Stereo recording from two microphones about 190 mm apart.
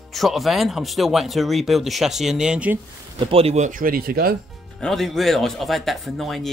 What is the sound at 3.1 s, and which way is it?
Speech, 30° right (ahead or behind).